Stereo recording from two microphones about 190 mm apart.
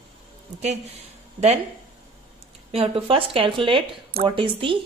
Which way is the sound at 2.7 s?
30° right (ahead or behind).